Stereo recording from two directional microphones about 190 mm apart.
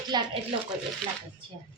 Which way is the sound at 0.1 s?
20° right (ahead or behind).